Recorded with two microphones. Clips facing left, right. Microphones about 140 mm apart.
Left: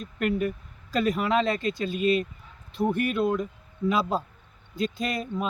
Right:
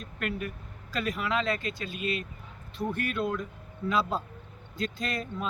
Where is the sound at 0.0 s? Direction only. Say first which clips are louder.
Left 8 dB; 25° left (ahead or behind).